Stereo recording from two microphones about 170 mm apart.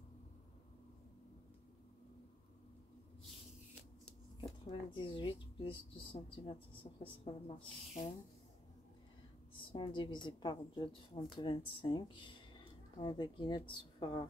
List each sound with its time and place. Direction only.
4.6 s speech: 30° left (ahead or behind)
9.5 s a woman's voice: 30° left (ahead or behind)